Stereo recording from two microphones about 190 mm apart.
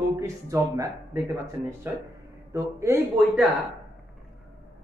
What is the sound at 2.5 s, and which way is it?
Speech, 15° right (ahead or behind).